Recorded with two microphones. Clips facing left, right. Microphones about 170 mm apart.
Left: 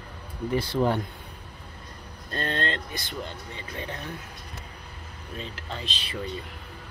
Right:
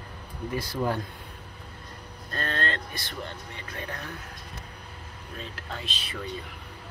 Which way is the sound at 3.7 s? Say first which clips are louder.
Left 1 dB; 20° left (ahead or behind).